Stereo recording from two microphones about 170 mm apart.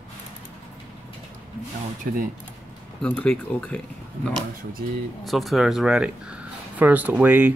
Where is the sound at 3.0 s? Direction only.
5° left (ahead or behind).